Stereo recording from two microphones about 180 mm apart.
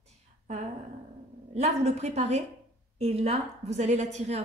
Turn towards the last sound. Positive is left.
turn(degrees=-40)  # may be behind; listen again after turning